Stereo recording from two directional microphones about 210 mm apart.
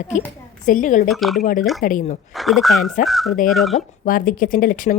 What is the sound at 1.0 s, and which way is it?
Speech, centre (ahead or behind).